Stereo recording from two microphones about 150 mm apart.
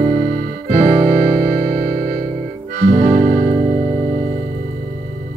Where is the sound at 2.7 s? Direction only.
65° right (ahead or behind).